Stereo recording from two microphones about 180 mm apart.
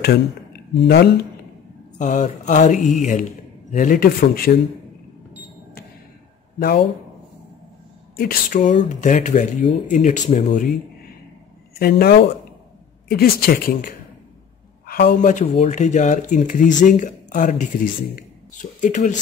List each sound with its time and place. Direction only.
0.7 s speech: 65° left (ahead or behind)
2.0 s speech: 40° left (ahead or behind)
8.2 s speech: 55° left (ahead or behind)
8.8 s speech: 45° left (ahead or behind)
11.8 s speech: 60° left (ahead or behind); by 19.1 s 40° left (ahead or behind)